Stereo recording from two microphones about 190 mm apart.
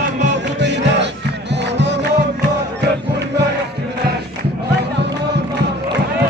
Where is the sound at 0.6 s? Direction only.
70° right (ahead or behind).